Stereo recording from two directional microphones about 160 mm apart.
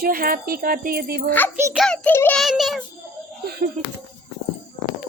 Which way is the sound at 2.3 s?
Centre (ahead or behind).